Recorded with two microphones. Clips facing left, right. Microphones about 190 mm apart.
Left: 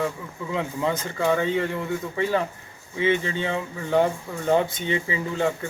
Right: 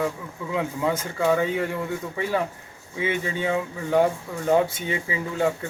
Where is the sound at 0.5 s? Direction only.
10° right (ahead or behind).